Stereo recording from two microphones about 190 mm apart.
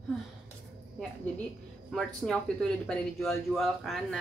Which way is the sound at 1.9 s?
5° left (ahead or behind).